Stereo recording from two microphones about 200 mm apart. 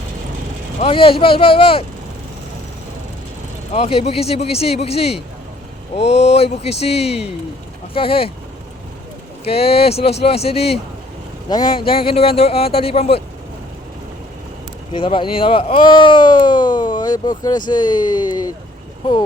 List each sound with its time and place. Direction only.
0.8 s speech: 25° left (ahead or behind)
3.7 s speech: 30° left (ahead or behind)
9.4 s speech: 30° left (ahead or behind)
14.9 s speech: 25° left (ahead or behind)